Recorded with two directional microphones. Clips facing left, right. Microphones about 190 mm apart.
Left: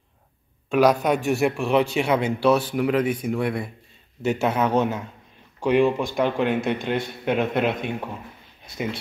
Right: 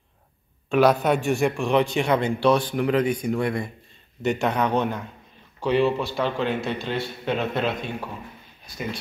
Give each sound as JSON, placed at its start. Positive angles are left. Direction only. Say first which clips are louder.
{"t": 0.7, "sound": "a man's voice", "louder": "even", "side_deg": 0}